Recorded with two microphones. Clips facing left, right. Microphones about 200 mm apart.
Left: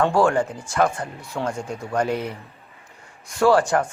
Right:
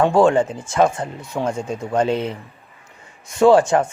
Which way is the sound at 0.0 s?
20° right (ahead or behind).